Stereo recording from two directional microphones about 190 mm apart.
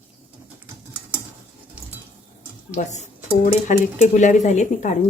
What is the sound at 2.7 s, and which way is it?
Speech, 35° left (ahead or behind).